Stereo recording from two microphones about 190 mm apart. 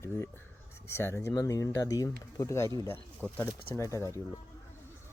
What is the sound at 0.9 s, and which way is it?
Speech, 15° left (ahead or behind).